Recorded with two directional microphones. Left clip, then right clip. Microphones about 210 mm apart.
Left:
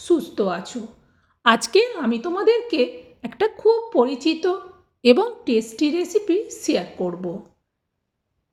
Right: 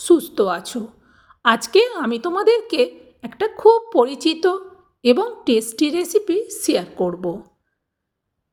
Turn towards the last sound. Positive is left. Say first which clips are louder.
# right 4 dB
turn(degrees=-50)  # may be behind; listen again after turning